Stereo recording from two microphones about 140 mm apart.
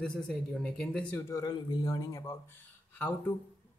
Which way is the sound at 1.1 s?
20° left (ahead or behind).